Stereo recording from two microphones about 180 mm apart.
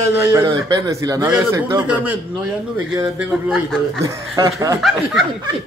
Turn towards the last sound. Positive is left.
turn(degrees=0)  # may be behind; listen again after turning